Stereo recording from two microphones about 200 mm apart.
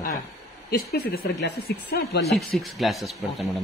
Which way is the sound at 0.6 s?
50° left (ahead or behind).